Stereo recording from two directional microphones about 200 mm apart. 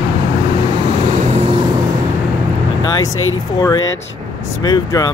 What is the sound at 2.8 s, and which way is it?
Vehicle, 20° left (ahead or behind).